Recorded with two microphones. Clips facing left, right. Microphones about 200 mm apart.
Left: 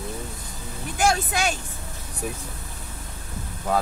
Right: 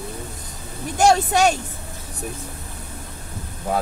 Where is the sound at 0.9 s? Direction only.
40° right (ahead or behind).